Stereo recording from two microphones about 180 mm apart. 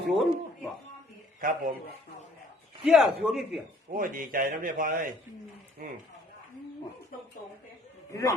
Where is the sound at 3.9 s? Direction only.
50° right (ahead or behind).